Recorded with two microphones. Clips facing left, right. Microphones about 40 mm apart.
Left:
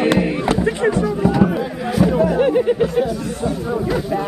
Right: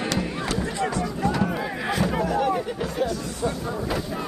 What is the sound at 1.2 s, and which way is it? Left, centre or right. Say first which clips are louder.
Music: left 6 dB; centre.